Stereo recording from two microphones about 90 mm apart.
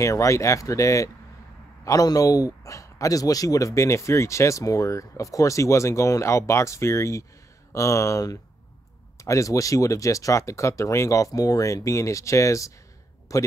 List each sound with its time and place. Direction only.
0.0 s a man's voice: 35° left (ahead or behind)